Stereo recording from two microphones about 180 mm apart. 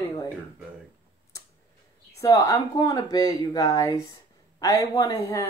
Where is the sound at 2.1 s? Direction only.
20° left (ahead or behind).